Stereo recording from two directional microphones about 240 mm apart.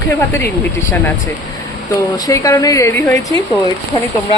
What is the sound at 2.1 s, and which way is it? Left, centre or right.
Speech, centre.